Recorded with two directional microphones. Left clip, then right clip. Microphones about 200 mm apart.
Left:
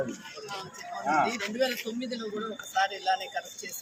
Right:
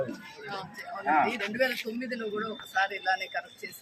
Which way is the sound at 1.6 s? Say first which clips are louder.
Right 1 dB; centre (ahead or behind).